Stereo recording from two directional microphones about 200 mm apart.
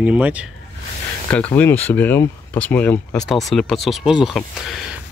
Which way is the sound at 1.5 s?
10° left (ahead or behind).